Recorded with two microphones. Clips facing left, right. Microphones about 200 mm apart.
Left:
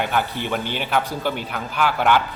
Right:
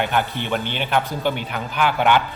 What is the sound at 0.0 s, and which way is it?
A man's voice, centre (ahead or behind).